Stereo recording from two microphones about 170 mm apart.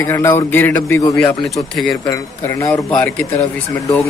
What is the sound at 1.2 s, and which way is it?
Speech, 5° left (ahead or behind).